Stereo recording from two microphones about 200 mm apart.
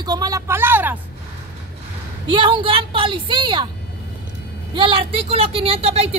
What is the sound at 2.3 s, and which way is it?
Speech, 25° right (ahead or behind).